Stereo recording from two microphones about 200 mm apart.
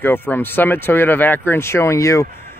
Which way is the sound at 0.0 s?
10° left (ahead or behind).